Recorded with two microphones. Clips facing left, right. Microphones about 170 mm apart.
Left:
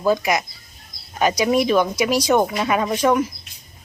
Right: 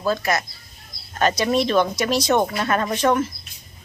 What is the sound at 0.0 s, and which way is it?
Speech, 15° left (ahead or behind).